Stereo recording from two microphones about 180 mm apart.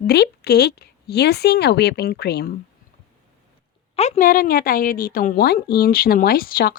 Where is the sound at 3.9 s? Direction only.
35° left (ahead or behind).